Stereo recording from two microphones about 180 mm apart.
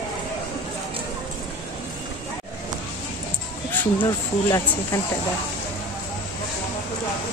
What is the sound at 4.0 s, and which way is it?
Speech, 20° left (ahead or behind).